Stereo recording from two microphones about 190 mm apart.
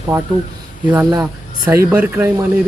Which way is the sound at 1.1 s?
20° right (ahead or behind).